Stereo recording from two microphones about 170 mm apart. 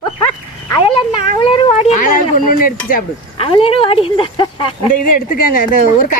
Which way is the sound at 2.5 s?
55° left (ahead or behind).